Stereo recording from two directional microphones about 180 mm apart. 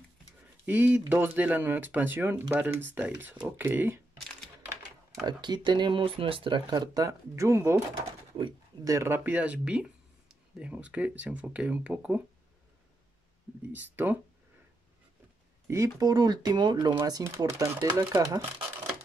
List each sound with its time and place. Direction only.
0.7 s speech: 10° right (ahead or behind)
5.2 s speech: 25° right (ahead or behind); by 12.2 s 10° right (ahead or behind)
13.7 s speech: 10° right (ahead or behind)
15.7 s speech: 20° right (ahead or behind)